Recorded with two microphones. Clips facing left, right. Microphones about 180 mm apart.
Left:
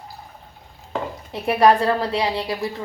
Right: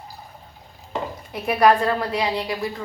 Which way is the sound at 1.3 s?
30° left (ahead or behind).